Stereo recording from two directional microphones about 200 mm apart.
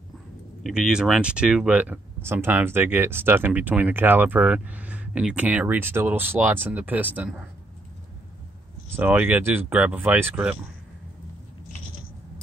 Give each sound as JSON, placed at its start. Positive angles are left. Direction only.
{"t": 0.7, "sound": "speech", "side_deg": -5}
{"t": 8.9, "sound": "speech", "side_deg": -10}